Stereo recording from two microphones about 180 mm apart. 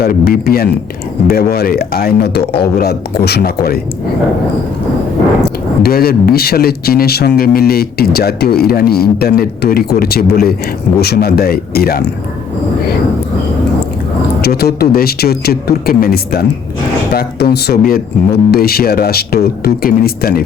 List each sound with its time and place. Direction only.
0.0 s speech: 60° left (ahead or behind)
5.8 s speech: 55° left (ahead or behind)
14.4 s speech: 60° left (ahead or behind)